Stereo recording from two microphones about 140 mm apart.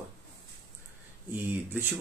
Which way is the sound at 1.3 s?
15° right (ahead or behind).